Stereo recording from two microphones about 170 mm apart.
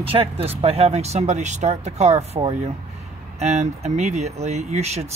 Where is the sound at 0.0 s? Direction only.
35° right (ahead or behind).